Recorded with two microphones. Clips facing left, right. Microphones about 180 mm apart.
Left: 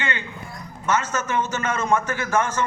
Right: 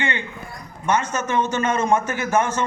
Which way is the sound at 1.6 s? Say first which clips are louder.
Right 3 dB; 25° right (ahead or behind).